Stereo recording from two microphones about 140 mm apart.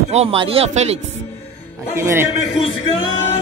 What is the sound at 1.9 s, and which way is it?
Music, 20° right (ahead or behind).